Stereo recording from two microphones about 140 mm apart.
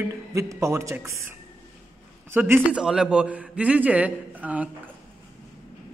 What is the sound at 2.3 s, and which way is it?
A man's voice, 15° right (ahead or behind).